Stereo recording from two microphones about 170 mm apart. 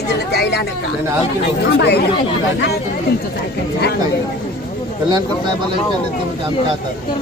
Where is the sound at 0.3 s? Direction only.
70° left (ahead or behind).